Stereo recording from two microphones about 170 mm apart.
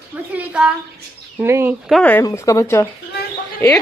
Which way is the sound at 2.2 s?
20° left (ahead or behind).